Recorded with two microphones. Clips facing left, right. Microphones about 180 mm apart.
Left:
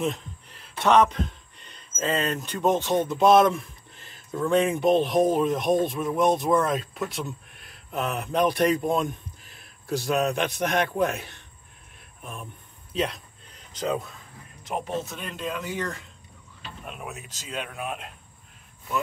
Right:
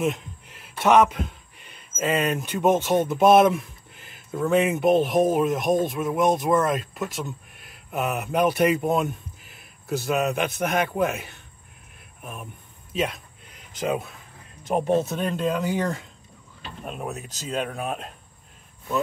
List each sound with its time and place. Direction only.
0.0 s a man's voice: 5° right (ahead or behind)
12.9 s a sound: 5° right (ahead or behind)
14.7 s speech: 45° right (ahead or behind)